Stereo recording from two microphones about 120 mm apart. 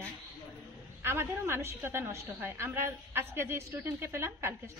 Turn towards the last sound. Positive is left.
turn(degrees=-20)  # may be behind; listen again after turning